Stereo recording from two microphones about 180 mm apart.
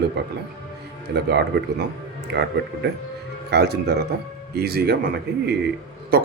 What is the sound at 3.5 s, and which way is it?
Speech, 65° right (ahead or behind).